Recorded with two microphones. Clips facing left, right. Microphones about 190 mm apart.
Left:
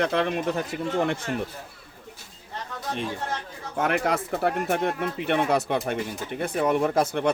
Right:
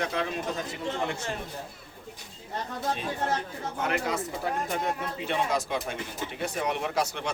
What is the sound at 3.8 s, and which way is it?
Speech, 60° left (ahead or behind).